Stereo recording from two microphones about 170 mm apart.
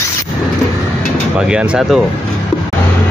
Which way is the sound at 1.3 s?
5° right (ahead or behind).